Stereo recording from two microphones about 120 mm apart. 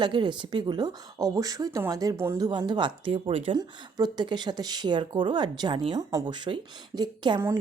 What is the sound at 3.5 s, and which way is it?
A woman's voice, 35° right (ahead or behind).